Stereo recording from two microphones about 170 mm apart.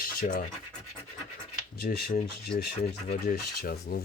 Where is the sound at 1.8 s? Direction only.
65° left (ahead or behind).